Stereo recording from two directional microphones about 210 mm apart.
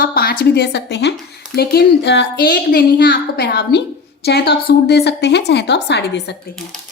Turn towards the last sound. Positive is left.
turn(degrees=55)  # may be behind; listen again after turning